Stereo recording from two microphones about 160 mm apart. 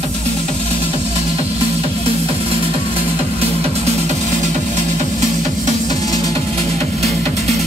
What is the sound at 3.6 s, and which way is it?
Music, 40° right (ahead or behind).